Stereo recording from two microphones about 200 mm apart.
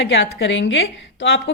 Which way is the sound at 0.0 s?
65° left (ahead or behind).